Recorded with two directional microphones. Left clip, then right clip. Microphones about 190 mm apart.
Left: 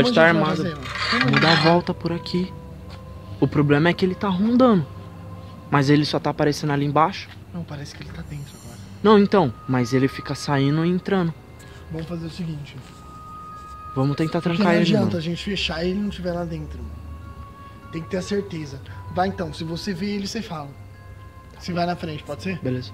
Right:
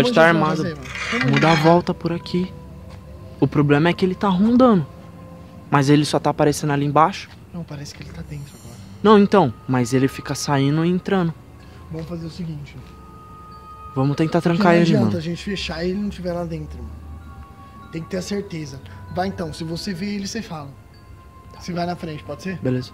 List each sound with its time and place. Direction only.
0.0 s speech: 20° right (ahead or behind)
0.7 s speech: 10° left (ahead or behind)
1.7 s speech: 15° right (ahead or behind)
4.2 s speech: 25° right (ahead or behind)
7.6 s speech: 40° right (ahead or behind)
9.0 s speech: 15° right (ahead or behind)
13.9 s speech: 20° right (ahead or behind)
14.8 s speech: 10° right (ahead or behind)
16.3 s speech: 35° right (ahead or behind)
17.9 s speech: 45° right (ahead or behind); by 20.6 s 15° right (ahead or behind)
21.6 s speech: 5° right (ahead or behind)
22.6 s speech: 35° right (ahead or behind)